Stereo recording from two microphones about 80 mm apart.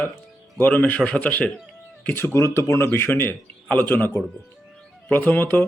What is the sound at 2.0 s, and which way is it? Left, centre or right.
Speech, left.